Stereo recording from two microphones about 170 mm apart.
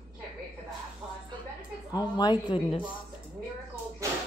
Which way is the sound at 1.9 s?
25° left (ahead or behind).